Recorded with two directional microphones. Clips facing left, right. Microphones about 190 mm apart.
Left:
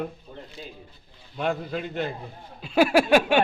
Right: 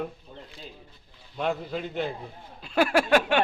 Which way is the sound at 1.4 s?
Centre (ahead or behind).